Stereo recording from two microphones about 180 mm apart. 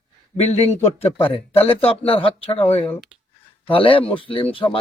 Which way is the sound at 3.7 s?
30° left (ahead or behind).